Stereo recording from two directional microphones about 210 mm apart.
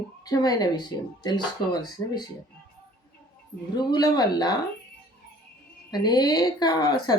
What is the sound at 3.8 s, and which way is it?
Speech, 20° left (ahead or behind).